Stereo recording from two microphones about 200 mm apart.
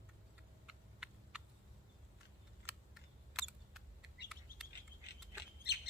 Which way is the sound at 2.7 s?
5° right (ahead or behind).